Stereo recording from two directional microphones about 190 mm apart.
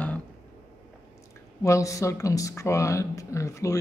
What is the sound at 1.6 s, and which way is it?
Speech, 15° left (ahead or behind).